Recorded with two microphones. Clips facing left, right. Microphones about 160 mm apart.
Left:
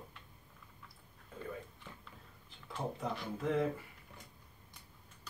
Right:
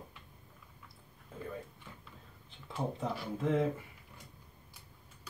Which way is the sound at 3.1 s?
Centre (ahead or behind).